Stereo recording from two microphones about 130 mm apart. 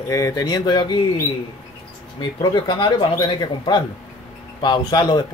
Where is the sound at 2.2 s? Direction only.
35° left (ahead or behind).